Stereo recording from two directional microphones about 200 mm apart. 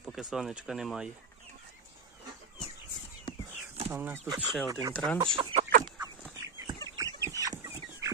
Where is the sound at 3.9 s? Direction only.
10° right (ahead or behind); by 5.2 s 5° left (ahead or behind).